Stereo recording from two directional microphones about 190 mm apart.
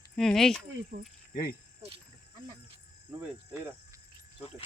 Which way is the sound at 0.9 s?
50° right (ahead or behind).